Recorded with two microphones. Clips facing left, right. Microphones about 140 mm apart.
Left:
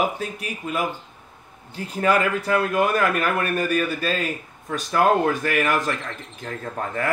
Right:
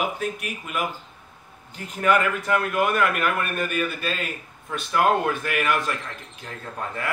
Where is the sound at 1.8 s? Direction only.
35° left (ahead or behind).